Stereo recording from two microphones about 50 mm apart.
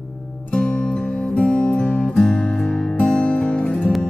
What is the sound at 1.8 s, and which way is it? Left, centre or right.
Music, left.